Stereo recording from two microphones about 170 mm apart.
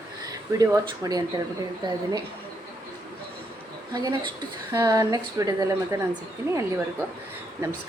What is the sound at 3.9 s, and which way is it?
A woman's voice, 25° right (ahead or behind).